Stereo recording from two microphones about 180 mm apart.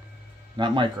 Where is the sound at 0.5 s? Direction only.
25° right (ahead or behind).